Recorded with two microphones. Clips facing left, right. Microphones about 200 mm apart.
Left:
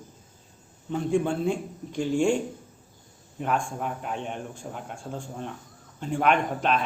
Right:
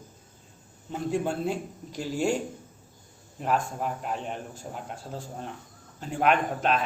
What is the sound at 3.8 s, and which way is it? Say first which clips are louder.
Speech: even; centre (ahead or behind).